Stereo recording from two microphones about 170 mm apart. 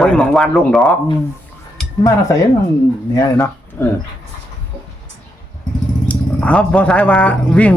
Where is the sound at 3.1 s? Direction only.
15° left (ahead or behind).